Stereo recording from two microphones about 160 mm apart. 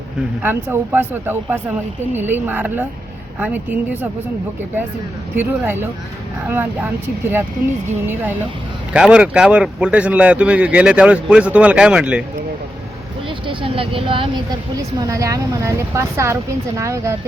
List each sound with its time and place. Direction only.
0.4 s speech: 15° right (ahead or behind)
5.4 s speech: 15° right (ahead or behind)
13.5 s speech: 35° right (ahead or behind)
14.8 s speech: 20° right (ahead or behind)